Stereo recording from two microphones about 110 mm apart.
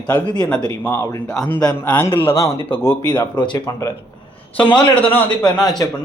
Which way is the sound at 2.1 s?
25° left (ahead or behind).